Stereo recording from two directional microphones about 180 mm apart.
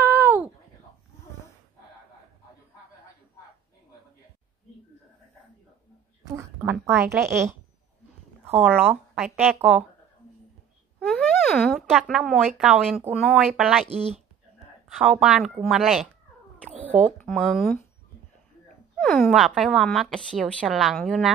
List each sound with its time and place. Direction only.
0.0 s a sound: 10° right (ahead or behind)
6.2 s a woman's voice: 15° right (ahead or behind)
11.1 s a woman's voice: 5° left (ahead or behind)
13.8 s speech: 35° right (ahead or behind)
14.9 s a woman's voice: centre (ahead or behind)
17.2 s a woman's voice: centre (ahead or behind)
19.3 s a woman's voice: centre (ahead or behind)